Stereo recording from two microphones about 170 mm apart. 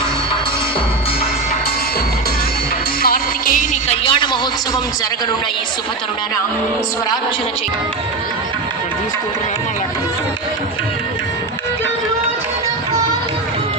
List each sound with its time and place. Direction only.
3.0 s music: 55° left (ahead or behind)
4.0 s music: 30° left (ahead or behind)